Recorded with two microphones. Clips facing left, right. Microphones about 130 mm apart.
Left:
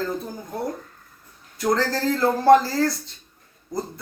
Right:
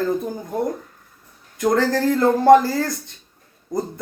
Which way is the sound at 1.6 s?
20° right (ahead or behind).